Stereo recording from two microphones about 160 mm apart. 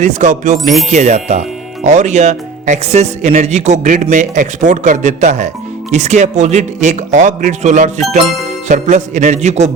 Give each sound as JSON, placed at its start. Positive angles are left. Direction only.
{"t": 0.0, "sound": "speech", "side_deg": -50}